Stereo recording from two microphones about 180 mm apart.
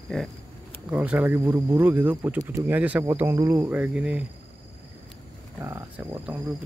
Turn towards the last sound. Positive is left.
turn(degrees=-10)  # may be behind; listen again after turning